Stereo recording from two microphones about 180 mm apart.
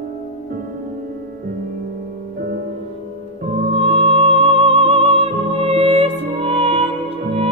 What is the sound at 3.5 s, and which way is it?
Music, 35° right (ahead or behind).